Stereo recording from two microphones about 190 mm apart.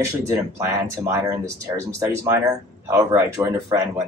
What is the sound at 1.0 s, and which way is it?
Speech, 15° right (ahead or behind).